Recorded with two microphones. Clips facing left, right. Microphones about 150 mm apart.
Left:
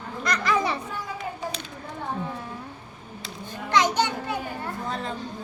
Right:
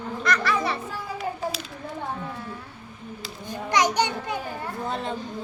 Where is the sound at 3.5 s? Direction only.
15° right (ahead or behind).